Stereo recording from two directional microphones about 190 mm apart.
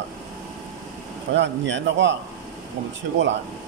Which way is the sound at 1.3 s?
70° right (ahead or behind).